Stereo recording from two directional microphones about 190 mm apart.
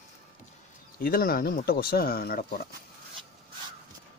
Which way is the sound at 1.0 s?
50° left (ahead or behind).